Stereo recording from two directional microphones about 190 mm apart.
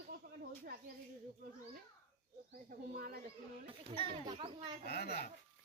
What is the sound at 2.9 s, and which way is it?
Speech, 55° right (ahead or behind).